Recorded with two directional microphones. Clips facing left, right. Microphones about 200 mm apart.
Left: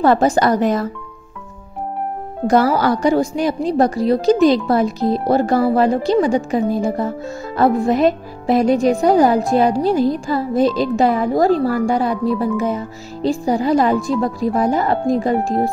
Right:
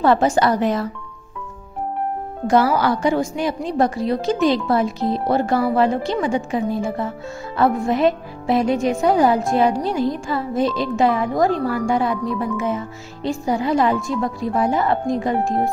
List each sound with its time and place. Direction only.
0.0 s a woman's voice: 40° left (ahead or behind)
2.4 s a woman's voice: 40° left (ahead or behind)